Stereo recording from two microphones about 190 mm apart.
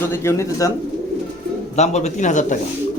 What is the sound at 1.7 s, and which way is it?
Speech, 35° left (ahead or behind).